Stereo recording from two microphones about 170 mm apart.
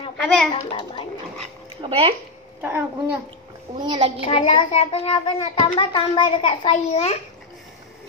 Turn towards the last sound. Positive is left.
turn(degrees=35)  # may be behind; listen again after turning